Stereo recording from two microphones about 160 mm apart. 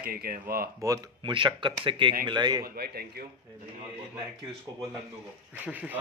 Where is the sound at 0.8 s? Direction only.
25° right (ahead or behind).